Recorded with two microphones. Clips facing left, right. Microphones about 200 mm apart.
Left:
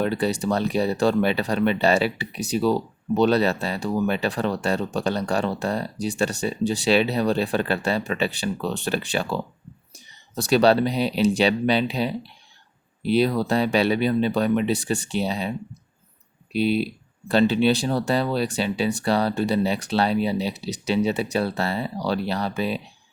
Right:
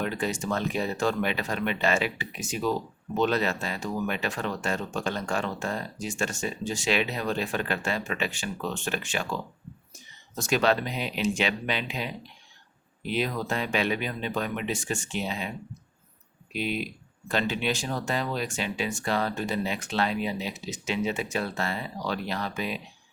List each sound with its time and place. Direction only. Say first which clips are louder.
0.0 s speech: left 6 dB; 35° left (ahead or behind)